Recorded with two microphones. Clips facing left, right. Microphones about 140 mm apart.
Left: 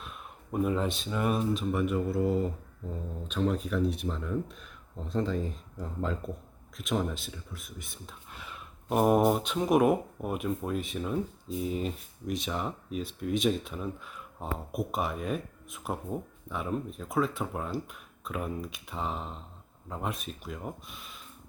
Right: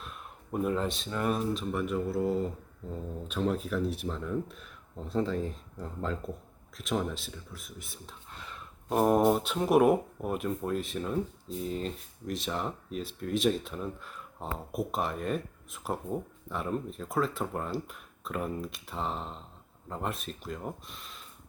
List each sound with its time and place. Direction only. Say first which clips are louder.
0.0 s speech: even; centre (ahead or behind)